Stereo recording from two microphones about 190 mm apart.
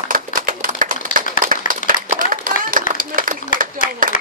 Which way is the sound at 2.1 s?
45° right (ahead or behind).